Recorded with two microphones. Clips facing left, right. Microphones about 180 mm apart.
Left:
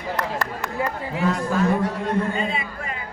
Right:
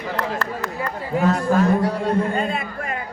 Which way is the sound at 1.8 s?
45° right (ahead or behind).